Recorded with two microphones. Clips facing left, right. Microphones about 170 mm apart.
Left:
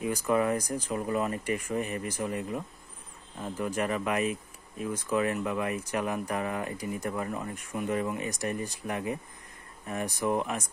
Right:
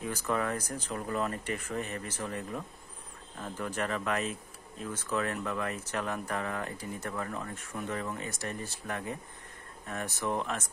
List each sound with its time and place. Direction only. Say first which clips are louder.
0.0 s speech: left 5 dB; 10° left (ahead or behind)